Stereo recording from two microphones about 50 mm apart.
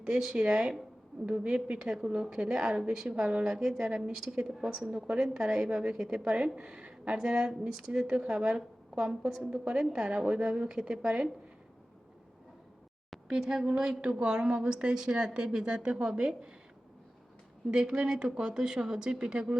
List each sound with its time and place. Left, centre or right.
0.0 s a woman's voice: centre
3.5 s a woman's voice: centre
4.8 s a woman's voice: right
5.2 s a woman's voice: centre
6.7 s a sound: right
7.2 s a woman's voice: centre
13.2 s a woman's voice: centre
17.7 s a woman's voice: centre